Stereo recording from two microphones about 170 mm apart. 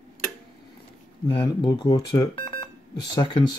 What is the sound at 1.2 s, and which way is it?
Speech, 25° left (ahead or behind).